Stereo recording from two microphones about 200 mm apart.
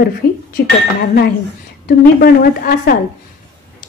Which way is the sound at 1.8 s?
50° left (ahead or behind).